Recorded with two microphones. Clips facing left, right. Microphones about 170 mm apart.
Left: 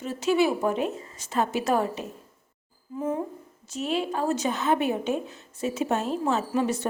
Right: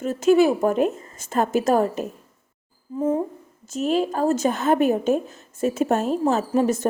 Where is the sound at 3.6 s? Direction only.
45° right (ahead or behind).